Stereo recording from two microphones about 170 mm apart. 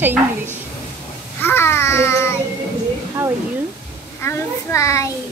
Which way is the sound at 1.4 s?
15° left (ahead or behind).